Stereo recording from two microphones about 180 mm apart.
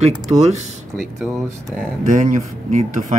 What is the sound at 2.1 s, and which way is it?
Speech, 40° right (ahead or behind).